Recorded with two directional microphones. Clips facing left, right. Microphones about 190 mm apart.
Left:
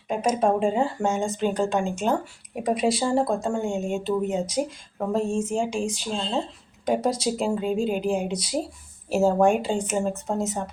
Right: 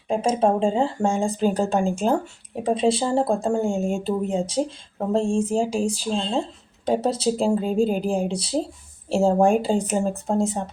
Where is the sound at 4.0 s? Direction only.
30° right (ahead or behind).